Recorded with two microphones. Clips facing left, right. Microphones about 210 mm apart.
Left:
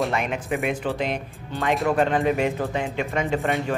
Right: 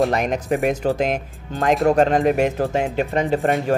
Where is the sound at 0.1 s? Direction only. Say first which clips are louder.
Right 5 dB; 40° right (ahead or behind).